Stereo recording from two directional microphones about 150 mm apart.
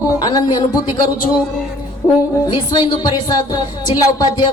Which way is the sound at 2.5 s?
30° left (ahead or behind).